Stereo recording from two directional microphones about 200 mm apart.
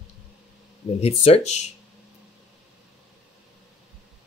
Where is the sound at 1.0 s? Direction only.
30° left (ahead or behind).